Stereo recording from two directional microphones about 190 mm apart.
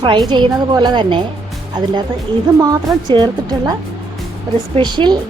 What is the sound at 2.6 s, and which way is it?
Speech, 20° right (ahead or behind).